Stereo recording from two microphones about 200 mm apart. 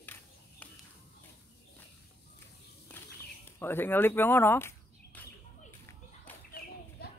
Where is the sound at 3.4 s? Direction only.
10° left (ahead or behind).